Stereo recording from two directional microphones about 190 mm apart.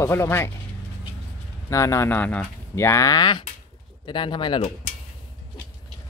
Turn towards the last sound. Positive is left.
turn(degrees=30)  # may be behind; listen again after turning